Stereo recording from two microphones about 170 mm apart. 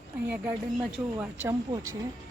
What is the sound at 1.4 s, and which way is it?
Speech, 20° right (ahead or behind).